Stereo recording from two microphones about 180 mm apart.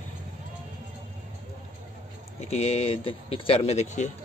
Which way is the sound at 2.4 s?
35° left (ahead or behind).